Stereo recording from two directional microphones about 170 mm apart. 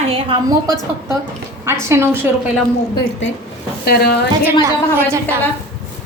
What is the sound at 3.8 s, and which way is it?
Speech, 70° left (ahead or behind).